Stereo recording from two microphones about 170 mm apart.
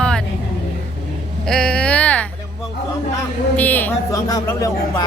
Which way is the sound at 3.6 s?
10° left (ahead or behind).